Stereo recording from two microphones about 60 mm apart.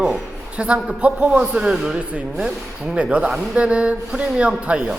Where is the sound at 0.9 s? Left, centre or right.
Right.